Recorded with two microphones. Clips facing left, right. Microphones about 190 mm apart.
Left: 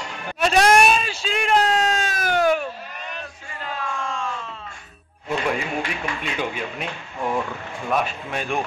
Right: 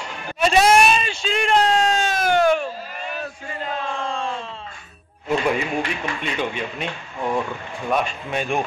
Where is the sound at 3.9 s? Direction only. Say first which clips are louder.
Right 2 dB; 30° right (ahead or behind).